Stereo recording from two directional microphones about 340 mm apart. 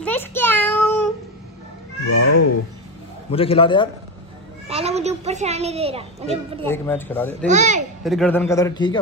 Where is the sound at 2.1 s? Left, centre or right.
Left.